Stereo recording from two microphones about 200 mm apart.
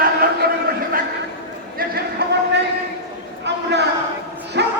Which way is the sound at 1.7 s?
50° right (ahead or behind).